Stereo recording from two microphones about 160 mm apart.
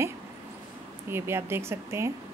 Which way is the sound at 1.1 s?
15° right (ahead or behind).